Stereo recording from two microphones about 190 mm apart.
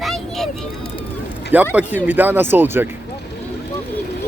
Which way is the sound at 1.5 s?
10° right (ahead or behind).